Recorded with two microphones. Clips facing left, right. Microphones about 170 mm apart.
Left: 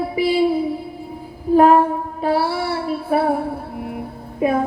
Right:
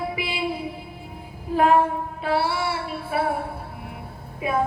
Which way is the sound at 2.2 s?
45° left (ahead or behind).